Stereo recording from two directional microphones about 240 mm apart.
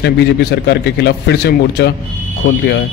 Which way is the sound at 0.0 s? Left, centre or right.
Left.